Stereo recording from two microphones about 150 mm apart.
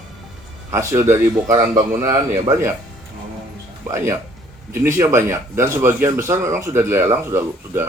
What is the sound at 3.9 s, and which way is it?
Speech, 20° right (ahead or behind).